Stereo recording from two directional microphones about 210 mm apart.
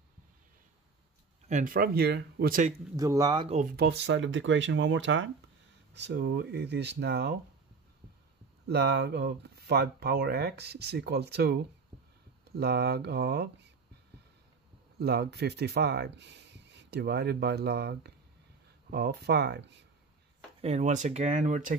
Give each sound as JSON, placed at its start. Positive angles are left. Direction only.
{"t": 1.5, "sound": "speech", "side_deg": -40}
{"t": 3.0, "sound": "speech", "side_deg": -15}
{"t": 3.5, "sound": "speech", "side_deg": -50}
{"t": 8.6, "sound": "speech", "side_deg": -50}
{"t": 15.0, "sound": "speech", "side_deg": -50}
{"t": 20.6, "sound": "speech", "side_deg": -35}